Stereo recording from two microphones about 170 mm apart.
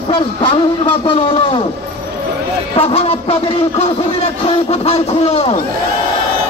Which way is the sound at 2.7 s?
35° left (ahead or behind).